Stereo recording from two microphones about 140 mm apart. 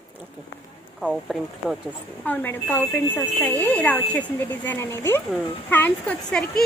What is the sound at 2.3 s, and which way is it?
A woman's voice, 10° left (ahead or behind).